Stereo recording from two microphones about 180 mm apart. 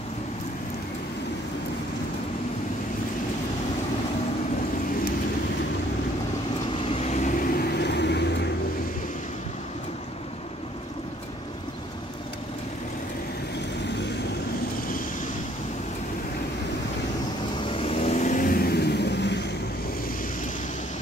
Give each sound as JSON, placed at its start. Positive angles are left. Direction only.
{"t": 6.8, "sound": "vehicle", "side_deg": 35}
{"t": 17.6, "sound": "vehicle", "side_deg": 30}